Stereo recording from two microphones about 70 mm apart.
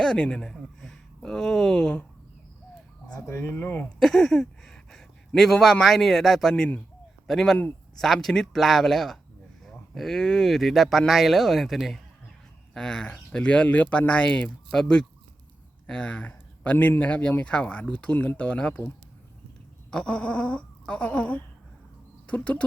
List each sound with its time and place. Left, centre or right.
0.0 s speech: centre
0.5 s speech: centre
3.2 s speech: left
4.0 s speech: centre; by 14.1 s left
14.1 s speech: centre
19.9 s speech: centre